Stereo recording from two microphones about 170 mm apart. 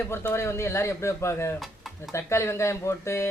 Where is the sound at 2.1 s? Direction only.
15° left (ahead or behind).